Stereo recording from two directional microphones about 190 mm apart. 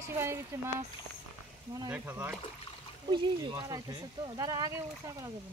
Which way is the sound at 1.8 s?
10° right (ahead or behind).